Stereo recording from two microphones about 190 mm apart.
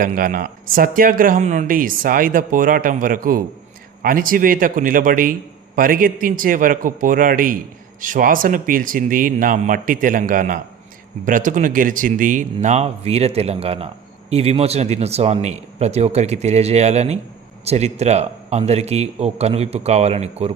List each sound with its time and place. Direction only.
0.0 s a man's voice: 45° right (ahead or behind)